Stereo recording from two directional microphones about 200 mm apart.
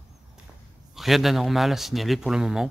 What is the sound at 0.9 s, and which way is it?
A man's voice, centre (ahead or behind).